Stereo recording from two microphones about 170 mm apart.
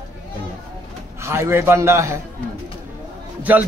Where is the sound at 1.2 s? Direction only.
15° right (ahead or behind).